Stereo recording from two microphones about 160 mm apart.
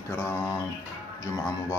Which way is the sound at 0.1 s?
15° left (ahead or behind).